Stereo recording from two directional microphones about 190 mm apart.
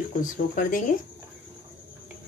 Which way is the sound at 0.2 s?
45° left (ahead or behind).